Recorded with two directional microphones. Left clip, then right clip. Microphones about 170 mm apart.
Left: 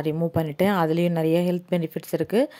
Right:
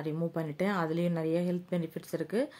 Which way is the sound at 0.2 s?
45° left (ahead or behind).